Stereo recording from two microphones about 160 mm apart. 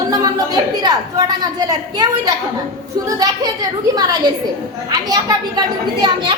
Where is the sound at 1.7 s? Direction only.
25° right (ahead or behind).